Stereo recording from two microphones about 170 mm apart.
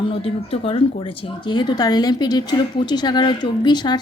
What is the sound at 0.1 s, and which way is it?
Speech, 35° left (ahead or behind).